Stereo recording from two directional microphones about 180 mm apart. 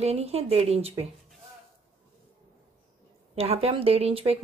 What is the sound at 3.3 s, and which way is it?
Speech, 35° right (ahead or behind).